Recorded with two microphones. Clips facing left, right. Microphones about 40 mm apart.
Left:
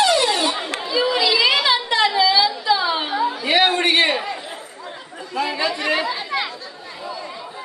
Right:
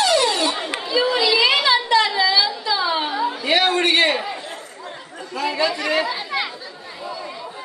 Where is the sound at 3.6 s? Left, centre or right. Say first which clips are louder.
Left 1 dB; centre.